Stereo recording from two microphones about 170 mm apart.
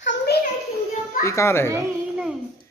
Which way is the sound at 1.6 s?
15° right (ahead or behind).